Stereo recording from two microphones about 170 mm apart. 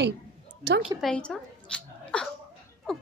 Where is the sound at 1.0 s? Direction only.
5° left (ahead or behind).